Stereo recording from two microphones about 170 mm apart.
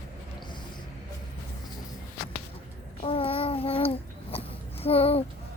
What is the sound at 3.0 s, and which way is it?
Babbling, 35° left (ahead or behind).